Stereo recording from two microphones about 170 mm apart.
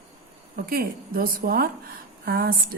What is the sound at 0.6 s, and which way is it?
A woman's voice, 60° right (ahead or behind).